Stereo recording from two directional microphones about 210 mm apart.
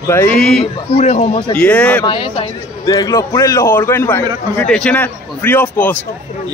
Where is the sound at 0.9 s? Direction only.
30° left (ahead or behind).